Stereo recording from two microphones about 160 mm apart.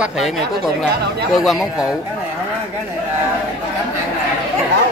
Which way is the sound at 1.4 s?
Centre (ahead or behind).